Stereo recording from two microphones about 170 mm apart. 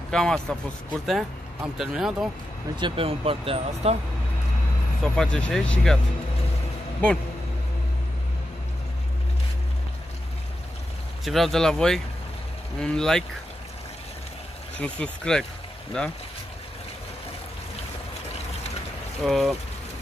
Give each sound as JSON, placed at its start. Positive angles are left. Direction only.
{"t": 0.1, "sound": "speech", "side_deg": 5}
{"t": 2.8, "sound": "speech", "side_deg": -35}
{"t": 5.0, "sound": "speech", "side_deg": 5}
{"t": 11.2, "sound": "speech", "side_deg": 0}
{"t": 14.8, "sound": "speech", "side_deg": 5}
{"t": 19.2, "sound": "speech", "side_deg": 0}